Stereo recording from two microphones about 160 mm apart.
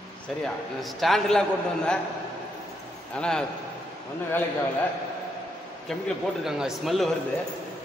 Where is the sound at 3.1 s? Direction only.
5° left (ahead or behind).